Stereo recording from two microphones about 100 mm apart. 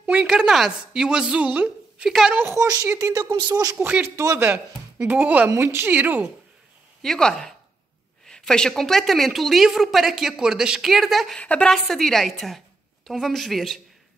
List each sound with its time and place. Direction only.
0.0 s a woman's voice: 10° right (ahead or behind)
2.3 s speech: 25° right (ahead or behind)
3.3 s speech: 40° right (ahead or behind)
3.8 s speech: 20° right (ahead or behind)
7.0 s speech: 5° left (ahead or behind)
11.3 s speech: 10° left (ahead or behind)